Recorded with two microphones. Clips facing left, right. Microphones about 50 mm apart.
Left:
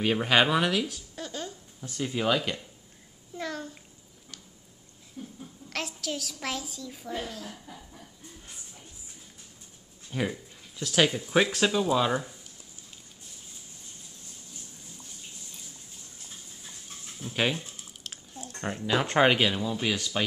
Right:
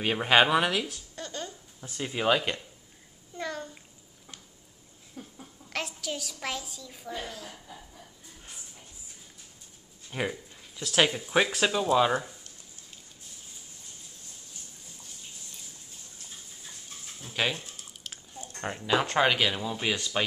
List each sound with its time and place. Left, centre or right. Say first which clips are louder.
0.0 s speech: right 1 dB; centre
1.1 s a sound: left 1 dB; centre
1.8 s speech: left 2 dB; centre
3.3 s babbling: even; centre
5.2 s a sound: left 3 dB; right
5.7 s a woman's voice: even; centre
10.1 s speech: left 1 dB; centre
11.0 s speech: left 1 dB; centre
17.3 s speech: left 2 dB; centre
18.0 s squish: even; centre
18.7 s speech: left 1 dB; centre
19.0 s speech: left 5 dB; centre
19.5 s speech: left 1 dB; centre